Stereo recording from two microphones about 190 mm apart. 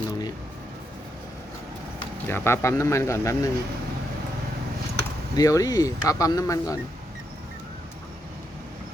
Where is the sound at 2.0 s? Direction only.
10° left (ahead or behind).